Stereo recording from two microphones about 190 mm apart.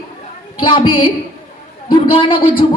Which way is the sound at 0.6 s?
25° left (ahead or behind).